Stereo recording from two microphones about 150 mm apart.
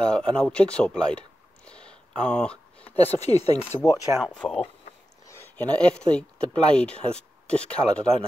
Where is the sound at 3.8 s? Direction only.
25° left (ahead or behind).